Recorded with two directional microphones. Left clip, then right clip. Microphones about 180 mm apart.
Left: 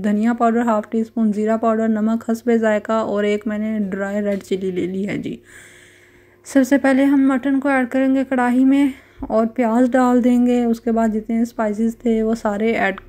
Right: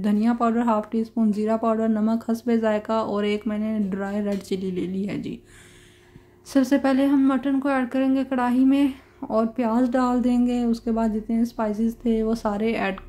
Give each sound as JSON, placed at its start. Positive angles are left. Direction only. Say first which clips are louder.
{"t": 0.0, "sound": "speech", "louder": "left 5 dB", "side_deg": 20}
{"t": 6.5, "sound": "speech", "louder": "left 5 dB", "side_deg": 25}